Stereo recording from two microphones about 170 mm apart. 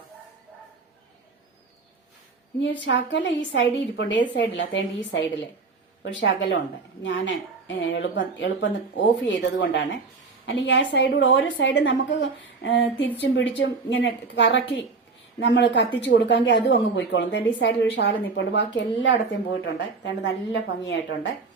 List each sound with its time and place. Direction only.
2.6 s a woman's voice: 90° left